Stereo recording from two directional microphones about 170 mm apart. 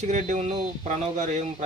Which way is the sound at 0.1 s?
45° right (ahead or behind).